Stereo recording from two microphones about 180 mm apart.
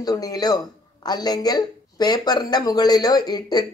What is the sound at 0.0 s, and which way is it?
Speech, 20° left (ahead or behind).